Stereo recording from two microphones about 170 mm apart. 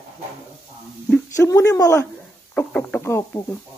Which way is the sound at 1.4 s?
20° left (ahead or behind).